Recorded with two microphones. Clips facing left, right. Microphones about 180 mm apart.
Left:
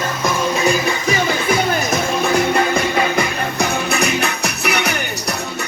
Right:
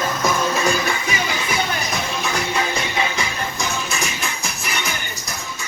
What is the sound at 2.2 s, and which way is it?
Music, 55° left (ahead or behind).